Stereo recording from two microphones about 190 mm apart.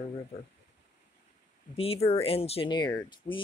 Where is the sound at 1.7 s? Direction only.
30° left (ahead or behind).